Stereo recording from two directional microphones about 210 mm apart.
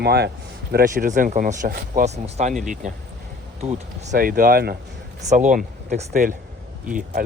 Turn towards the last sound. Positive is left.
turn(degrees=-40)  # may be behind; listen again after turning